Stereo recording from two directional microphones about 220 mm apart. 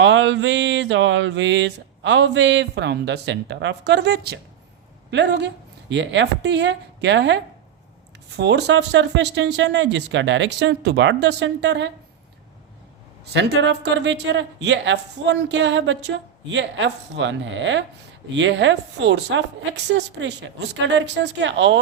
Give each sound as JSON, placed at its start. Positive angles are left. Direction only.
{"t": 0.0, "sound": "speech", "side_deg": -55}
{"t": 13.3, "sound": "speech", "side_deg": -50}